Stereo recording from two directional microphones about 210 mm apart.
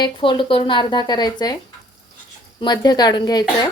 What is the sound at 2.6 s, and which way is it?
Speech, 20° left (ahead or behind).